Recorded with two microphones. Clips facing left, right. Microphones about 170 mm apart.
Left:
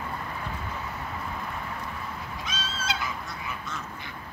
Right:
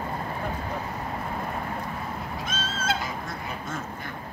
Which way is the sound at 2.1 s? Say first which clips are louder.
Right 4 dB; 55° right (ahead or behind).